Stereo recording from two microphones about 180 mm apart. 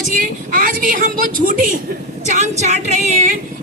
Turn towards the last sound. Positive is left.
turn(degrees=-40)  # may be behind; listen again after turning